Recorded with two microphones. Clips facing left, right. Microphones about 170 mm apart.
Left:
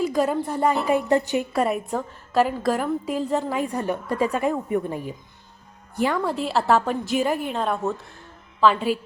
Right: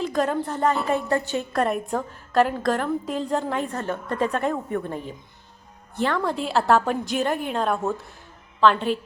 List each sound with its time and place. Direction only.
0.0 s a woman's voice: 5° left (ahead or behind)